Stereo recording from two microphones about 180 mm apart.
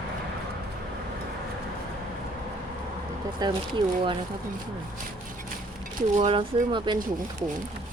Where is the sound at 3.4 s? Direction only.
25° right (ahead or behind).